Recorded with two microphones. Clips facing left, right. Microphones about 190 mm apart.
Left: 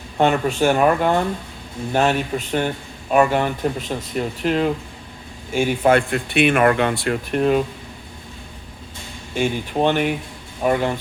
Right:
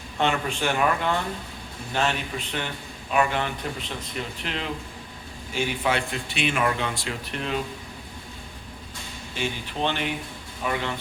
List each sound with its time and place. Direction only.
0.2 s a man's voice: 45° left (ahead or behind)
9.3 s a man's voice: 50° left (ahead or behind)